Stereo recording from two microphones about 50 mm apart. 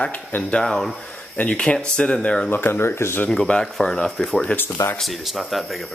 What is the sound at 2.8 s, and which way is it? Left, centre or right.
Speech, left.